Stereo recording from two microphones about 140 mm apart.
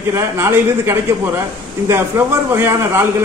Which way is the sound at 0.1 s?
20° right (ahead or behind).